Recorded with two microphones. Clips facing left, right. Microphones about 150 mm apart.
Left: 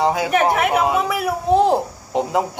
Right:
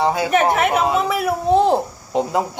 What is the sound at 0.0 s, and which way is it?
Speech, 20° left (ahead or behind).